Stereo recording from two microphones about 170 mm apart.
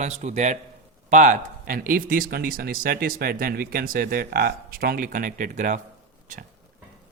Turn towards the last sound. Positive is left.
turn(degrees=-45)  # may be behind; listen again after turning